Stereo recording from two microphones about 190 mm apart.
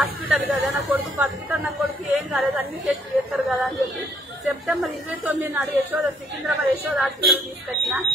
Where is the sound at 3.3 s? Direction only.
Centre (ahead or behind).